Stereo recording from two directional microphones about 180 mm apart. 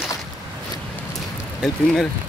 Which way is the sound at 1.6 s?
Centre (ahead or behind).